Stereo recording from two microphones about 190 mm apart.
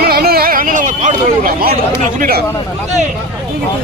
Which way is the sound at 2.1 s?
50° right (ahead or behind).